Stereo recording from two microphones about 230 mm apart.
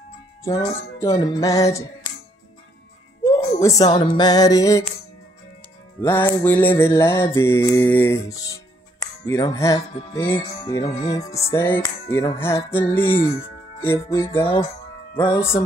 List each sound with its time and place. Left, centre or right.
1.0 s speech: centre
3.3 s music: centre
5.9 s speech: centre
10.8 s music: left
11.1 s speech: centre